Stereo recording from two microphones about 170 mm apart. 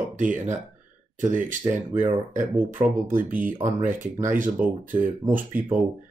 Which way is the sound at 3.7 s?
50° right (ahead or behind).